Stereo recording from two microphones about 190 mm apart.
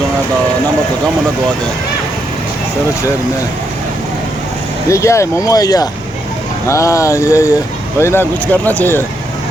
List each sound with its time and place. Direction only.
4.9 s speech: 15° left (ahead or behind)